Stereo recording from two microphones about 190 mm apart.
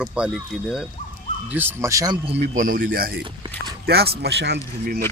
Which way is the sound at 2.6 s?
45° right (ahead or behind).